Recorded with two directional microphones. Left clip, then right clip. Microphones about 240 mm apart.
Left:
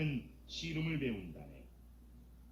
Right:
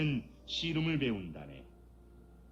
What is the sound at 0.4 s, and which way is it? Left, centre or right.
Speech, centre.